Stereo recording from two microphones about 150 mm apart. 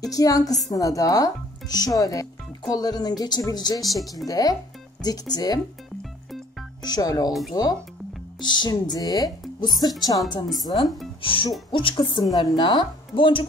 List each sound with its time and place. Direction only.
0.0 s speech: 25° left (ahead or behind)
3.8 s speech: centre (ahead or behind)
4.3 s speech: 25° left (ahead or behind)
6.8 s speech: 25° left (ahead or behind)
11.2 s speech: 35° left (ahead or behind)